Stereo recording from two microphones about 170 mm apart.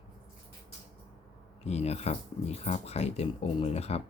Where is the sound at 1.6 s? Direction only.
40° left (ahead or behind).